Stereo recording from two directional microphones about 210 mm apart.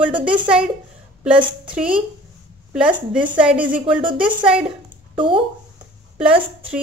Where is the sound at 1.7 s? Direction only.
5° right (ahead or behind).